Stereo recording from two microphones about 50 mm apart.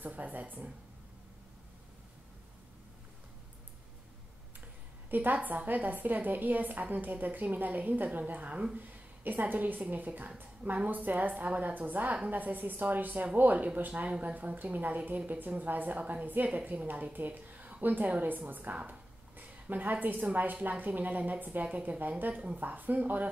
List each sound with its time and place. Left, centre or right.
0.0 s speech: right
5.1 s a woman's voice: right